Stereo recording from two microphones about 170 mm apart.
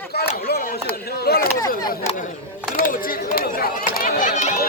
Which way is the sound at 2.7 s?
55° left (ahead or behind).